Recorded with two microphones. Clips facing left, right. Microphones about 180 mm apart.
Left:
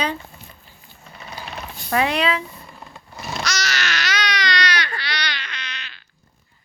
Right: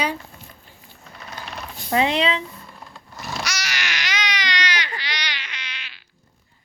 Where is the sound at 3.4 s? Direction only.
10° right (ahead or behind).